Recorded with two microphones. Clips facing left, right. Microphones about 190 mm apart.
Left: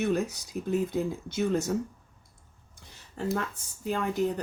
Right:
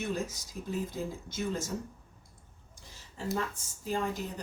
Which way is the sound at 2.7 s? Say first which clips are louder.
Left 4 dB; 60° left (ahead or behind).